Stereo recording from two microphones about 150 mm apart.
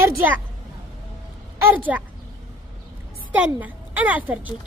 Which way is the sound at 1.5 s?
15° right (ahead or behind).